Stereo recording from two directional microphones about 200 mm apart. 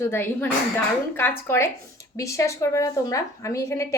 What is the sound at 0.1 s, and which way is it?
A woman's voice, 10° left (ahead or behind).